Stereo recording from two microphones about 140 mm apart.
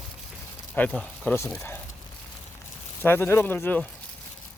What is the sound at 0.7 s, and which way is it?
Speech, 10° left (ahead or behind).